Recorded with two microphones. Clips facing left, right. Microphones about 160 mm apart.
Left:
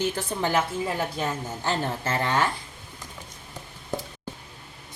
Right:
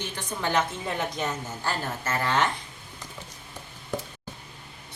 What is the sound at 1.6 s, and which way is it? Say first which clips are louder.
Speech: left 5 dB; 25° left (ahead or behind).